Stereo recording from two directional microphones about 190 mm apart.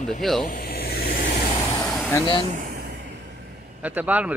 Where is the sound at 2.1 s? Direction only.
25° left (ahead or behind).